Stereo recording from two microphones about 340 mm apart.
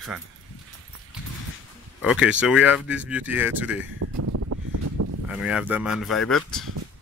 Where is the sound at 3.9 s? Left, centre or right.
Right.